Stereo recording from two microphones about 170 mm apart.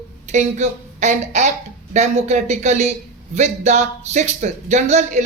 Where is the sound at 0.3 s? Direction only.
45° right (ahead or behind).